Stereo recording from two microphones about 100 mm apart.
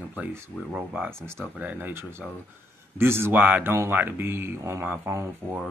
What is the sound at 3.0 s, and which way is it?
Speech, 25° right (ahead or behind).